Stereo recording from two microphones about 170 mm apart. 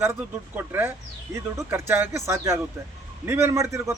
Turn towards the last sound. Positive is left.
turn(degrees=-15)  # may be behind; listen again after turning